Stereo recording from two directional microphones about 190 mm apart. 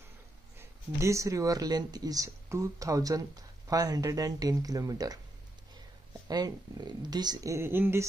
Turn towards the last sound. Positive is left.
turn(degrees=-10)  # may be behind; listen again after turning